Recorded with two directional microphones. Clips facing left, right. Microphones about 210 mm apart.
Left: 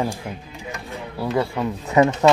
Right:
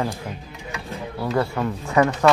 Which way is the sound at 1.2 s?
10° left (ahead or behind).